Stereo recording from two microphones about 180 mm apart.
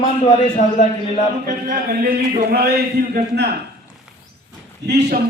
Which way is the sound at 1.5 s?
45° right (ahead or behind).